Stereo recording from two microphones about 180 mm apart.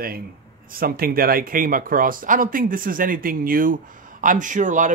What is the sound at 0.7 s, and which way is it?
Speech, 55° right (ahead or behind).